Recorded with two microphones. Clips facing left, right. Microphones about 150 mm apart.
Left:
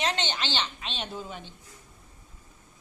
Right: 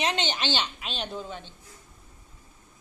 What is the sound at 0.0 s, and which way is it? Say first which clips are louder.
A woman's voice: right 2 dB; 15° right (ahead or behind).